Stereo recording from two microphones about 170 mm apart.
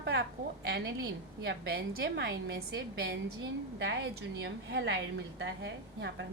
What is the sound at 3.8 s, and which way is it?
A woman's voice, 85° right.